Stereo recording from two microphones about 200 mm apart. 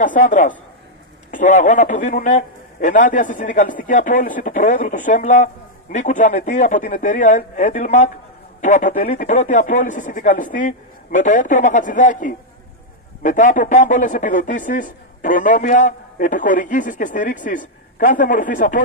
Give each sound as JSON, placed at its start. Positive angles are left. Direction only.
{"t": 0.0, "sound": "a man's voice", "side_deg": 40}